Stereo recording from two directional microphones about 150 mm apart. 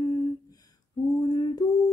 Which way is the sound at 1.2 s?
25° left (ahead or behind).